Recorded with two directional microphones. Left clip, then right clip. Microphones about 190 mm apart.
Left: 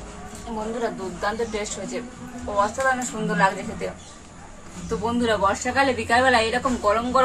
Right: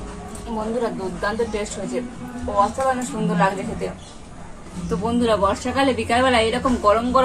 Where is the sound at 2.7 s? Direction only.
Centre (ahead or behind).